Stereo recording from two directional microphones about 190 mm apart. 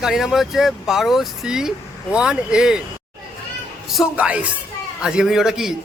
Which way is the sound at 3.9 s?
5° right (ahead or behind).